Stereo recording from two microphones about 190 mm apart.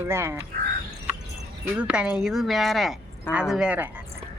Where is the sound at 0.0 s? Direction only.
15° right (ahead or behind).